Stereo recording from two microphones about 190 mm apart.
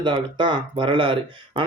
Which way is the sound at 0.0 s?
25° right (ahead or behind).